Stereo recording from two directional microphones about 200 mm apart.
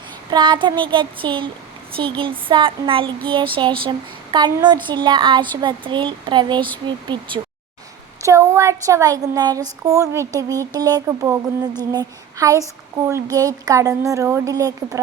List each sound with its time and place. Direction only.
0.3 s speech: 20° right (ahead or behind)